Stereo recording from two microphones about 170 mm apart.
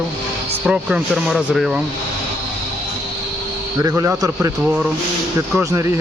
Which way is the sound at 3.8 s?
20° right (ahead or behind).